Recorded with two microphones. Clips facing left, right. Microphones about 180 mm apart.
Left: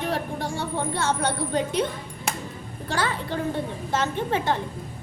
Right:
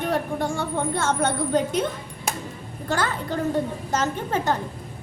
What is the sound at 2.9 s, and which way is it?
A woman's voice, 45° right (ahead or behind).